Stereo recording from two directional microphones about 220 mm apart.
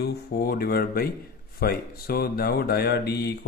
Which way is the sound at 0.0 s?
45° left (ahead or behind).